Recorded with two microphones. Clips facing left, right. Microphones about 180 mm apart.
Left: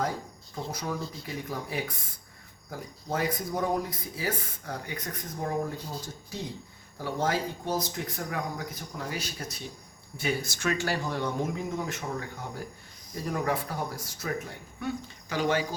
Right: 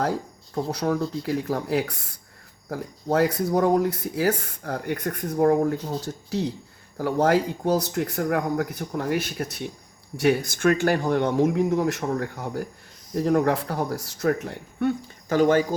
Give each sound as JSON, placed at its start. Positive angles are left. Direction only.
{"t": 0.0, "sound": "speech", "side_deg": -70}
{"t": 6.9, "sound": "speech", "side_deg": -65}
{"t": 13.1, "sound": "speech", "side_deg": -70}